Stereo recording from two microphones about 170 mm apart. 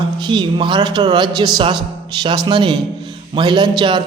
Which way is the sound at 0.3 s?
25° right (ahead or behind).